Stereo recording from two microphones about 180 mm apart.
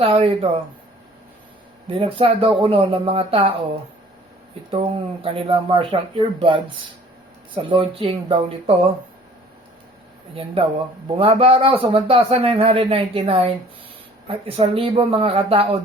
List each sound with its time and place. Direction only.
0.0 s a man's voice: 35° right (ahead or behind)
1.9 s a man's voice: 30° right (ahead or behind)
5.2 s a man's voice: 30° right (ahead or behind)
10.3 s a man's voice: 30° right (ahead or behind)